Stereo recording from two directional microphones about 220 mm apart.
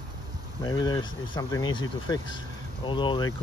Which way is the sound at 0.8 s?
15° left (ahead or behind).